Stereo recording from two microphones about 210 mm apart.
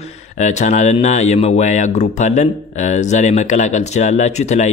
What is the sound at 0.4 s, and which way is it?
A man's voice, 35° left (ahead or behind).